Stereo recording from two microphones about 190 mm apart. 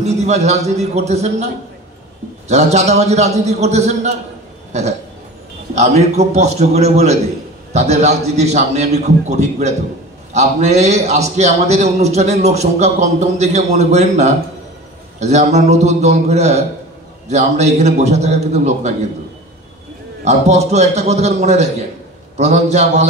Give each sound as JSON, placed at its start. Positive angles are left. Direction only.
{"t": 0.0, "sound": "a man's voice", "side_deg": -35}
{"t": 5.8, "sound": "a man's voice", "side_deg": -35}
{"t": 20.2, "sound": "a man's voice", "side_deg": -35}